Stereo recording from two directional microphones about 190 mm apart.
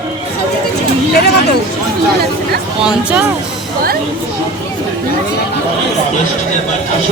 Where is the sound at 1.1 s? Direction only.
60° left (ahead or behind).